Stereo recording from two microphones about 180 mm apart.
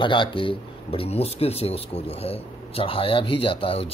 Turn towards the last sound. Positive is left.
turn(degrees=30)  # may be behind; listen again after turning